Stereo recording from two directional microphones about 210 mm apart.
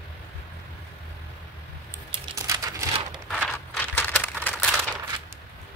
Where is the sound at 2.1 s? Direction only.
20° right (ahead or behind).